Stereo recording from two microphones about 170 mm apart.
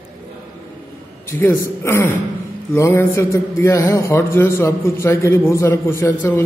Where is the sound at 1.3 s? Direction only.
15° left (ahead or behind).